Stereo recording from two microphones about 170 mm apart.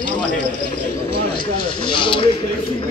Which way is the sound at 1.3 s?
30° left (ahead or behind).